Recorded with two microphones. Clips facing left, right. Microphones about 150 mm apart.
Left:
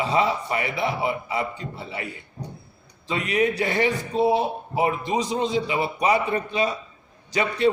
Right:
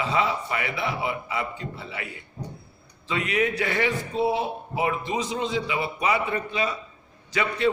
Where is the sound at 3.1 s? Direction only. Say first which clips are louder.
Left 2 dB; 35° left (ahead or behind).